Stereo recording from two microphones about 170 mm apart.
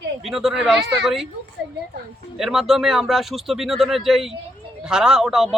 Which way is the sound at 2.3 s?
Centre (ahead or behind).